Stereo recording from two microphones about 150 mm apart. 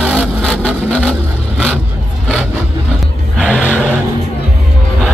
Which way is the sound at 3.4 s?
5° left (ahead or behind).